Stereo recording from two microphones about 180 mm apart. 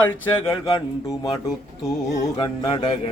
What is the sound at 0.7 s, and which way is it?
Music, 25° left (ahead or behind).